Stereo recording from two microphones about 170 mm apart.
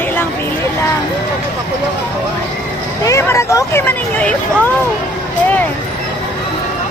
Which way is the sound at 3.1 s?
15° left (ahead or behind).